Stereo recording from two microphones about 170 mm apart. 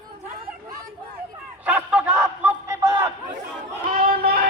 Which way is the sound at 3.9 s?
60° right (ahead or behind).